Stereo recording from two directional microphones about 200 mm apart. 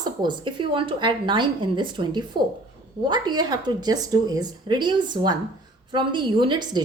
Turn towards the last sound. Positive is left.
turn(degrees=-20)  # may be behind; listen again after turning